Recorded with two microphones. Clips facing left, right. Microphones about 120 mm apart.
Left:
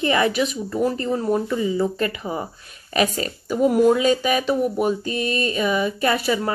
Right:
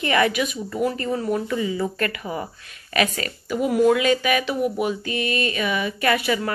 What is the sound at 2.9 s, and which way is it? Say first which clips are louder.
Speech: left 2 dB; 30° left (ahead or behind).